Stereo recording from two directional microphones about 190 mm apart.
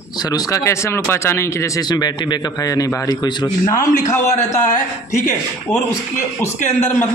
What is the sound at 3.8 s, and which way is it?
A man's voice, 40° left (ahead or behind).